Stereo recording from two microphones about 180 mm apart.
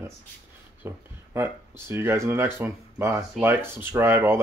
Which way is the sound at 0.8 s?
15° right (ahead or behind).